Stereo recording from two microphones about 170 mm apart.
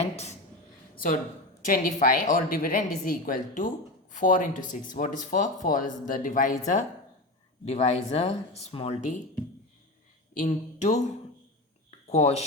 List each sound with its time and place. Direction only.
1.6 s a woman's voice: 55° left (ahead or behind)
7.6 s speech: 35° left (ahead or behind)
10.3 s speech: 50° left (ahead or behind)
12.1 s speech: 40° left (ahead or behind)